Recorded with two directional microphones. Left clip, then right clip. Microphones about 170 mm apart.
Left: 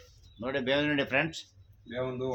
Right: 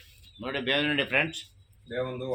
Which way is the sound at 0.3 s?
20° left (ahead or behind).